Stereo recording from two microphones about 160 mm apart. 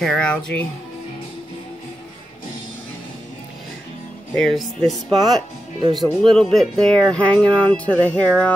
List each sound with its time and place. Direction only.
0.0 s speech: 5° left (ahead or behind)
4.4 s speech: centre (ahead or behind)
5.2 s speech: 25° right (ahead or behind)
6.2 s speech: centre (ahead or behind)